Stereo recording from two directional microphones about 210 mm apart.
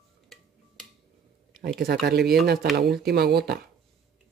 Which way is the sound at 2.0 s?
50° right (ahead or behind).